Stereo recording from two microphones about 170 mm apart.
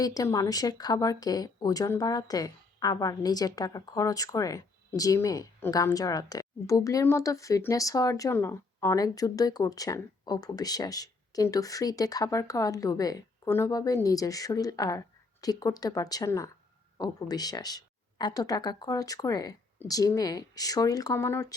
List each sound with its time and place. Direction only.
0.0 s speech: 20° left (ahead or behind)